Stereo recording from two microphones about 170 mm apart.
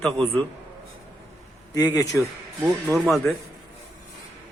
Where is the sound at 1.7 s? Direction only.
20° left (ahead or behind).